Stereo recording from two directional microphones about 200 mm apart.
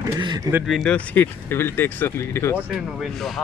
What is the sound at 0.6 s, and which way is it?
Speech, centre (ahead or behind).